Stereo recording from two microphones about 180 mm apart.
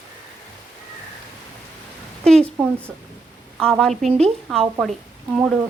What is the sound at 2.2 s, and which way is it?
Speech, 5° left (ahead or behind).